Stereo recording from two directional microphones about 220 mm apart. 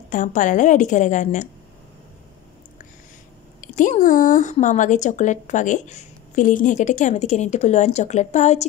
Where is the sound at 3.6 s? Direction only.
35° left (ahead or behind).